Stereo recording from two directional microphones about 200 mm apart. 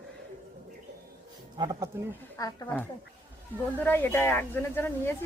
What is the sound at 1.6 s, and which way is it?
Speech, 20° right (ahead or behind).